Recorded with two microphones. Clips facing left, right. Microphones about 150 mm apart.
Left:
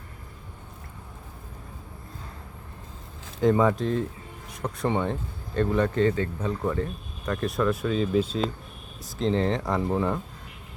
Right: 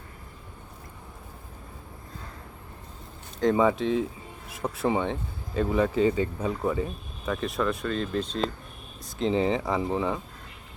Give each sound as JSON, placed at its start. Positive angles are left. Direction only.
{"t": 3.5, "sound": "speech", "side_deg": -5}